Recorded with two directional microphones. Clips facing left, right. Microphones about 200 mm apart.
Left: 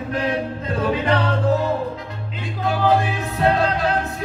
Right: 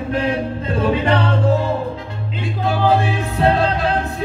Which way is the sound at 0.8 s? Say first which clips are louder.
Right 3 dB; 25° right (ahead or behind).